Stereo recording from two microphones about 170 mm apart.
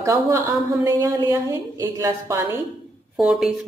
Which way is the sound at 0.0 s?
15° right (ahead or behind).